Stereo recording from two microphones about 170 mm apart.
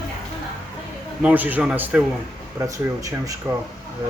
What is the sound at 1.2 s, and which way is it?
Speech, 10° right (ahead or behind).